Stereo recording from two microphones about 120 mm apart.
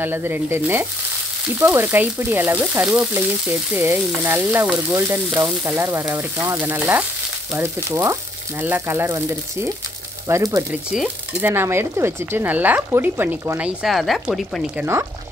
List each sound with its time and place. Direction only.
0.0 s frying: 20° right (ahead or behind)
10.7 s frying: 10° right (ahead or behind)
11.5 s frying: 20° right (ahead or behind)
13.8 s speech: centre (ahead or behind)
14.8 s frying: 20° right (ahead or behind)